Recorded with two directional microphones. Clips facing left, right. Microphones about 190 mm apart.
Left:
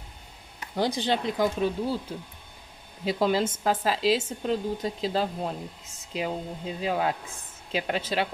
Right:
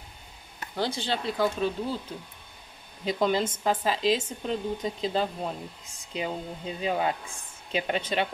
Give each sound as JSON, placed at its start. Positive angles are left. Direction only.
{"t": 0.7, "sound": "speech", "side_deg": 15}